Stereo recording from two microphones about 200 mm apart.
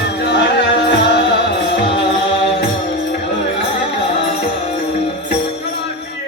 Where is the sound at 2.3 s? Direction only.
25° left (ahead or behind).